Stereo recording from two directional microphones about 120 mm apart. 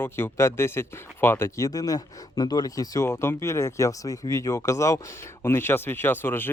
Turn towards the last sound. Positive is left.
turn(degrees=20)  # may be behind; listen again after turning